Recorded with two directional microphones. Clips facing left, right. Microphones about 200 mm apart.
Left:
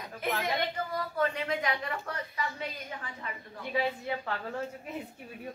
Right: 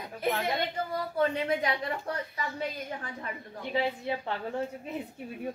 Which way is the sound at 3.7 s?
25° right (ahead or behind).